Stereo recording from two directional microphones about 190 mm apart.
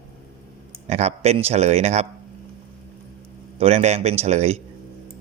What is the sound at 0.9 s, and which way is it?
A man's voice, 35° right (ahead or behind).